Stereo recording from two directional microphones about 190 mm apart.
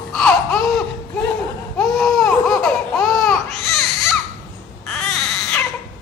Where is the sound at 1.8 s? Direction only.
Centre (ahead or behind).